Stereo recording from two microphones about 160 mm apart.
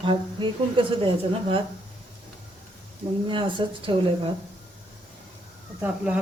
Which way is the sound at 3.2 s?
30° right (ahead or behind).